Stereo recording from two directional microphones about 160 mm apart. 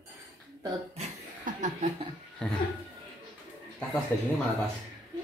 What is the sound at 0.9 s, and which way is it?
Chuckle, 50° right (ahead or behind).